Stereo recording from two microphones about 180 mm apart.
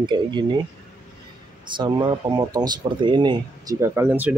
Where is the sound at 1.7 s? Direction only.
25° right (ahead or behind); by 4.3 s 10° right (ahead or behind).